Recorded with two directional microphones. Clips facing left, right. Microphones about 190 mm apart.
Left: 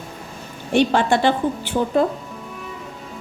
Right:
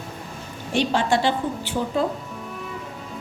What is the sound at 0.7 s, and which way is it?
A woman's voice, 55° left (ahead or behind).